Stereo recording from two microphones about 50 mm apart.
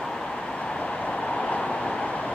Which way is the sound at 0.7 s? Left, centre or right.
Centre.